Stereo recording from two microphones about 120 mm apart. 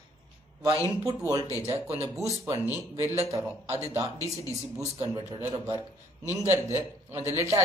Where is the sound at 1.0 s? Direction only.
30° right (ahead or behind).